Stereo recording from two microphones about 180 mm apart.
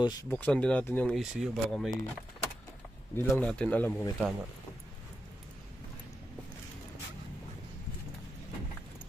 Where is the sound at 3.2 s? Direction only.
10° left (ahead or behind).